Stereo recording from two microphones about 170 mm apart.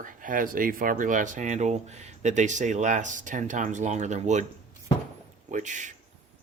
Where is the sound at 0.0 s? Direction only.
50° right (ahead or behind).